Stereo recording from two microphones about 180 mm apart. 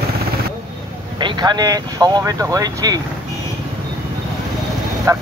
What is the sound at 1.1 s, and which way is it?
Speech, 25° right (ahead or behind).